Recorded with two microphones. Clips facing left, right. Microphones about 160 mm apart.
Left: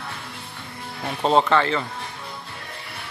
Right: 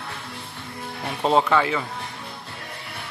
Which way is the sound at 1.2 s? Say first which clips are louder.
Left 1 dB; 5° right (ahead or behind).